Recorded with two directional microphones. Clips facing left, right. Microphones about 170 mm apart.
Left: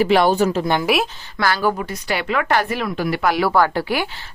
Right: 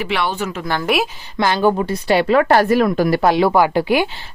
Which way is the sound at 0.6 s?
20° left (ahead or behind).